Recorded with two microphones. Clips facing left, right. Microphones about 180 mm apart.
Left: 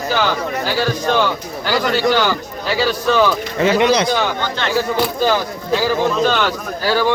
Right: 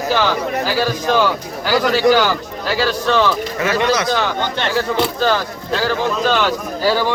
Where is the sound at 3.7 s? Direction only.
20° left (ahead or behind).